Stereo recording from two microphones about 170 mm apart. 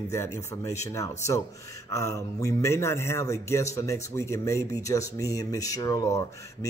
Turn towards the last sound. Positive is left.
turn(degrees=20)  # may be behind; listen again after turning